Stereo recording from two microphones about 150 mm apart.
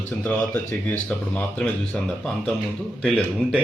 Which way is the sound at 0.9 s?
10° left (ahead or behind).